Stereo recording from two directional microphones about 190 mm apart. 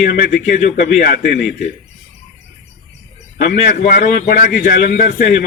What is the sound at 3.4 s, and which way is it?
A man's voice, 55° left (ahead or behind).